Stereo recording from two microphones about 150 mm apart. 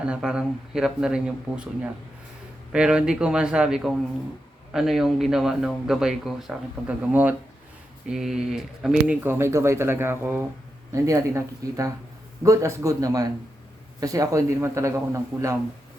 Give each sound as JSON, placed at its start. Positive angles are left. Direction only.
{"t": 0.0, "sound": "a man's voice", "side_deg": -5}
{"t": 9.2, "sound": "a man's voice", "side_deg": -15}